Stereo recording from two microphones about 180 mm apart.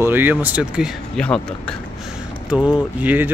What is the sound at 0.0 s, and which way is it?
Speech, 10° right (ahead or behind).